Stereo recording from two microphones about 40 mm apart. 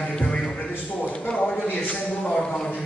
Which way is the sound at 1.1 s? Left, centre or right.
Left.